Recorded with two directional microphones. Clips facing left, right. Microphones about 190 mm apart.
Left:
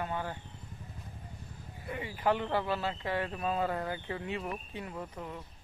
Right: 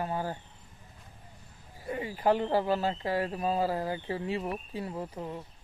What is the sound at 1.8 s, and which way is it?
Speech, 35° right (ahead or behind).